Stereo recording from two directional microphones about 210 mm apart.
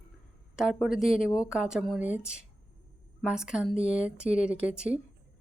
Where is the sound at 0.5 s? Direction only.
Centre (ahead or behind).